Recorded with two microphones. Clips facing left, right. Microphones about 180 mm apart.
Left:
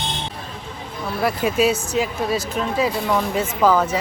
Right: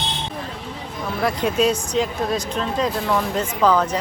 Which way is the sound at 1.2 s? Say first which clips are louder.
Left 1 dB; 5° left (ahead or behind).